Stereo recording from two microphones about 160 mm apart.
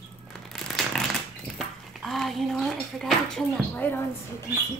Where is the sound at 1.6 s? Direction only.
Centre (ahead or behind).